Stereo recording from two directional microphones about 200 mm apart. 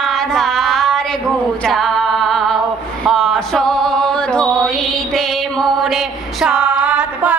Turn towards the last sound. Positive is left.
turn(degrees=-5)  # may be behind; listen again after turning